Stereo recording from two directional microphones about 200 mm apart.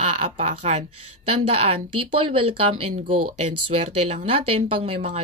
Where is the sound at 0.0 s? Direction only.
35° right (ahead or behind).